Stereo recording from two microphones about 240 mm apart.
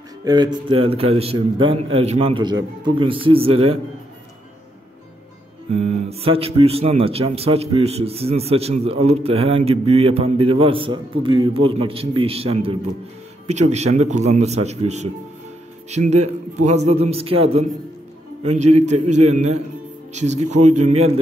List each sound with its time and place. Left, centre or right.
0.2 s speech: centre
5.7 s speech: right